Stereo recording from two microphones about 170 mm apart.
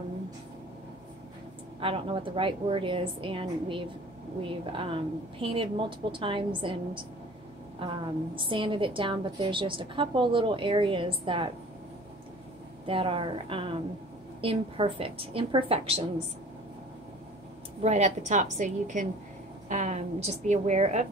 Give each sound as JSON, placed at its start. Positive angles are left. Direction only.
{"t": 1.8, "sound": "a woman's voice", "side_deg": -35}
{"t": 12.8, "sound": "a woman's voice", "side_deg": -30}
{"t": 17.8, "sound": "a woman's voice", "side_deg": -40}